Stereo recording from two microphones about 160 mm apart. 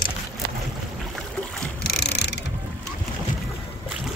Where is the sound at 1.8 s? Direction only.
85° left.